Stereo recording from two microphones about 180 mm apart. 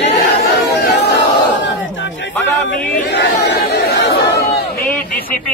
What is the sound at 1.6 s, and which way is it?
Battle cry, 90° left.